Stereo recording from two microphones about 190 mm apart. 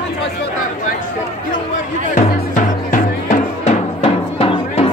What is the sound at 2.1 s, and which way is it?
Music, 45° left (ahead or behind).